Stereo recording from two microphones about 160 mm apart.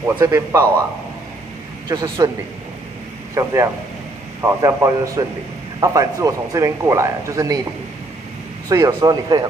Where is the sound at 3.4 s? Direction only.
20° right (ahead or behind).